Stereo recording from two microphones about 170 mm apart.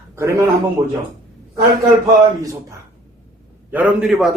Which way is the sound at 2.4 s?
20° right (ahead or behind).